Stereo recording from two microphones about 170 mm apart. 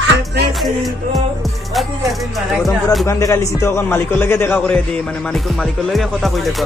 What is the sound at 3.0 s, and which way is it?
A man's voice, 20° left (ahead or behind).